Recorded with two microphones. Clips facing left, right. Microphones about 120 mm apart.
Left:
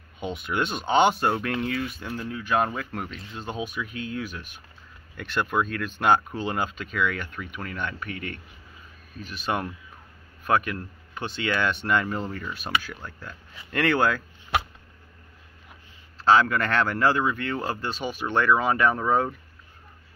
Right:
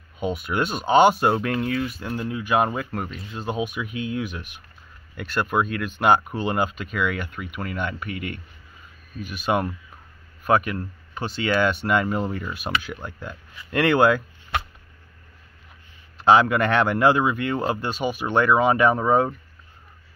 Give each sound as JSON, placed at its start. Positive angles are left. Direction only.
{"t": 0.2, "sound": "speech", "side_deg": -5}
{"t": 2.9, "sound": "speech", "side_deg": -5}
{"t": 16.2, "sound": "speech", "side_deg": -15}